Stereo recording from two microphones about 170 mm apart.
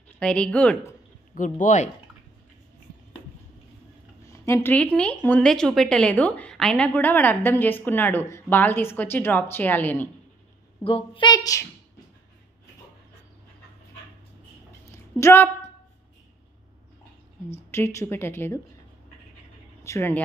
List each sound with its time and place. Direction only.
0.2 s speech: 5° left (ahead or behind)
1.3 s speech: 50° left (ahead or behind)
4.3 s speech: 15° left (ahead or behind)
10.8 s a woman's voice: 35° left (ahead or behind)
14.9 s a sound: 15° left (ahead or behind)
17.6 s speech: 15° left (ahead or behind)
19.8 s speech: 15° left (ahead or behind)